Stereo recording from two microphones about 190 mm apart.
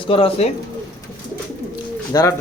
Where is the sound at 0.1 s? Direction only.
30° left (ahead or behind).